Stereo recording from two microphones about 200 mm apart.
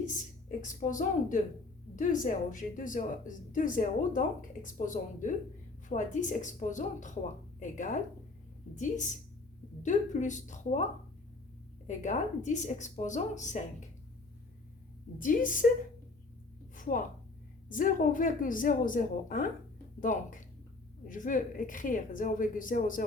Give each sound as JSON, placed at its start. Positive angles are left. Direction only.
{"t": 0.0, "sound": "a woman's voice", "side_deg": 40}
{"t": 11.9, "sound": "a woman's voice", "side_deg": 35}
{"t": 15.2, "sound": "a woman's voice", "side_deg": 45}
{"t": 16.7, "sound": "a sound", "side_deg": 40}
{"t": 17.7, "sound": "a woman's voice", "side_deg": 40}